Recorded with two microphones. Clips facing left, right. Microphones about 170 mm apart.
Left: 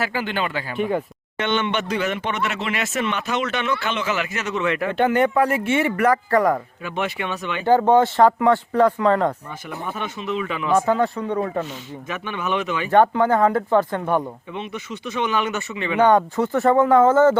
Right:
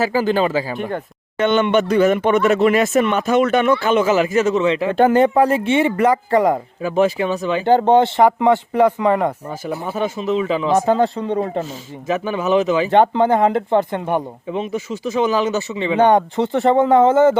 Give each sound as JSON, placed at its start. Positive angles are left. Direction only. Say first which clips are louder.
{"t": 0.1, "sound": "speech", "louder": "right 8 dB", "side_deg": -35}
{"t": 0.8, "sound": "speech", "louder": "left 2 dB", "side_deg": 5}
{"t": 1.4, "sound": "speech", "louder": "right 7 dB", "side_deg": -45}
{"t": 6.8, "sound": "speech", "louder": "right 11 dB", "side_deg": -35}
{"t": 9.5, "sound": "speech", "louder": "right 6 dB", "side_deg": -35}
{"t": 14.5, "sound": "speech", "louder": "right 10 dB", "side_deg": -40}